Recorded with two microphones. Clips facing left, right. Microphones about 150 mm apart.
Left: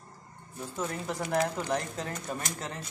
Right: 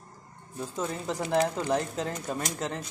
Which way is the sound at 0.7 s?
20° right (ahead or behind).